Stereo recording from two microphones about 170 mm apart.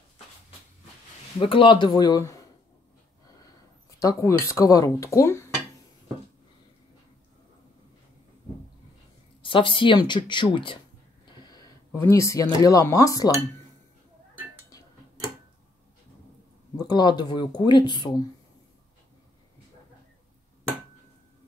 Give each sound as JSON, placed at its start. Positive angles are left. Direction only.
{"t": 1.4, "sound": "speech", "side_deg": 30}
{"t": 4.0, "sound": "speech", "side_deg": 20}
{"t": 9.4, "sound": "speech", "side_deg": 30}
{"t": 11.9, "sound": "speech", "side_deg": 15}
{"t": 16.7, "sound": "speech", "side_deg": 25}